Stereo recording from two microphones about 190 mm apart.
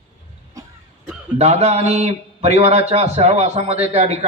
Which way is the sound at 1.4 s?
35° right (ahead or behind).